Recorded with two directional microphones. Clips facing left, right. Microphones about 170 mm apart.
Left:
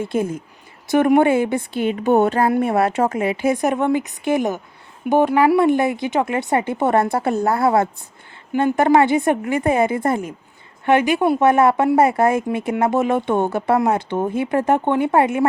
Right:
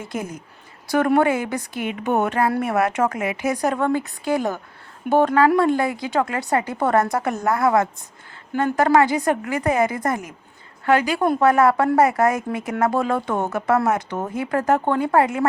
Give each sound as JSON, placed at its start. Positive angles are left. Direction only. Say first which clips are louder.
{"t": 0.0, "sound": "speech", "louder": "left 8 dB", "side_deg": 30}